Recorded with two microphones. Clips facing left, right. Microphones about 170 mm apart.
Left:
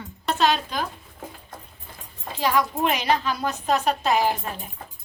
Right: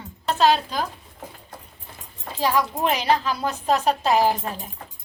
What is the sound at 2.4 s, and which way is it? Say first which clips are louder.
A woman's voice: even; 30° right (ahead or behind).